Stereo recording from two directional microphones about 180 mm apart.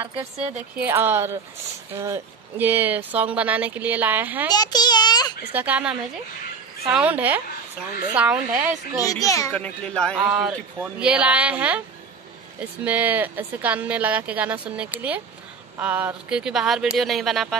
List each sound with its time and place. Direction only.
0.1 s speech: 35° right (ahead or behind)
0.7 s speech: 10° right (ahead or behind)
4.6 s a child's voice: 20° left (ahead or behind)
5.5 s speech: 10° right (ahead or behind)
9.0 s a child's voice: 20° left (ahead or behind)
9.5 s speech: 5° left (ahead or behind)
10.2 s speech: 5° right (ahead or behind)